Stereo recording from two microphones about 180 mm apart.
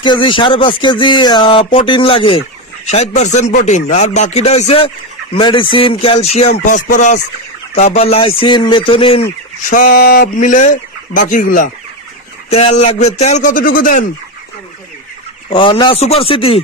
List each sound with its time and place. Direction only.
0.0 s speech: 25° left (ahead or behind)
9.6 s speech: 45° left (ahead or behind)
12.4 s speech: 35° left (ahead or behind)
15.5 s speech: 30° left (ahead or behind)